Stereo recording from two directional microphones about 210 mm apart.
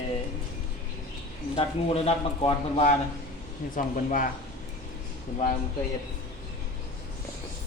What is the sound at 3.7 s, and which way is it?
Speech, 40° left (ahead or behind).